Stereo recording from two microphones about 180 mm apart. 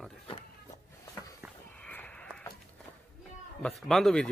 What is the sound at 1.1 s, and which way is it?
Walk, 20° left (ahead or behind).